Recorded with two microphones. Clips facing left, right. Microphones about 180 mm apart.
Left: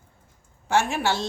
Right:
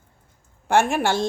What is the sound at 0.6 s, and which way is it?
Speech, 55° right (ahead or behind).